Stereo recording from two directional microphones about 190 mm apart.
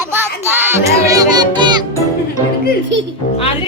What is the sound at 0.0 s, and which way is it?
Music, 10° right (ahead or behind).